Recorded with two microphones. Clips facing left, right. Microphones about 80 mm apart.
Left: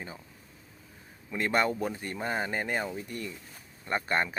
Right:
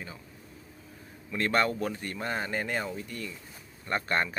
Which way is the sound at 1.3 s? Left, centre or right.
Centre.